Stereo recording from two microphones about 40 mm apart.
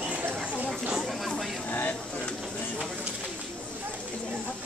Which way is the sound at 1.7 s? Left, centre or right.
Left.